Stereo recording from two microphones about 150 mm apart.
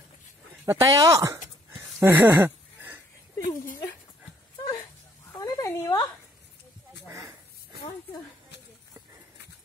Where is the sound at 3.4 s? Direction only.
65° left (ahead or behind).